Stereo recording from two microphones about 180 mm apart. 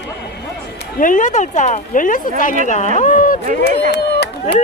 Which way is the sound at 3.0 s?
50° left (ahead or behind).